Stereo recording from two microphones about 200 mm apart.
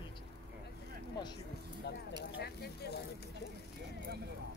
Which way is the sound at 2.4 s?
55° left (ahead or behind).